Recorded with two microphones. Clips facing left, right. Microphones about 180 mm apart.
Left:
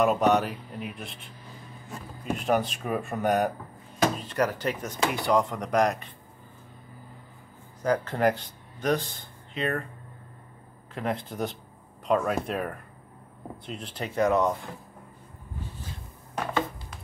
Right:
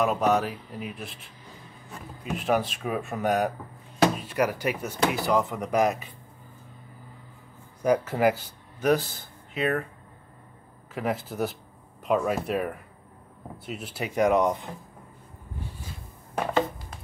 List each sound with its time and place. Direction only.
0.0 s speech: centre (ahead or behind)
2.3 s speech: centre (ahead or behind)
7.8 s speech: 10° right (ahead or behind)
11.0 s speech: 5° right (ahead or behind)